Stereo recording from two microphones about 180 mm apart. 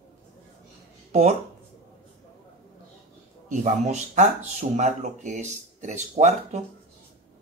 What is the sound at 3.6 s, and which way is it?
Speech, 40° right (ahead or behind).